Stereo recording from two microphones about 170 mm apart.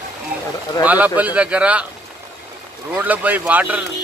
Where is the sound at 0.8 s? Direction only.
10° right (ahead or behind).